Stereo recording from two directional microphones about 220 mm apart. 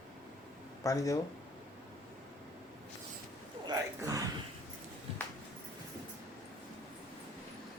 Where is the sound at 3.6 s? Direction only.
15° right (ahead or behind).